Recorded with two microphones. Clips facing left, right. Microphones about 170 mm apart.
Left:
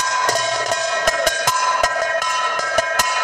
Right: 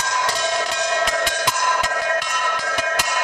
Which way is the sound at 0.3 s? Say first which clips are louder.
Left 3 dB; 45° left (ahead or behind).